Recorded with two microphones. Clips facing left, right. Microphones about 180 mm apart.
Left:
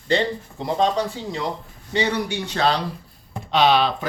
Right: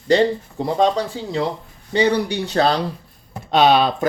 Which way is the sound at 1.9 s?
35° right (ahead or behind).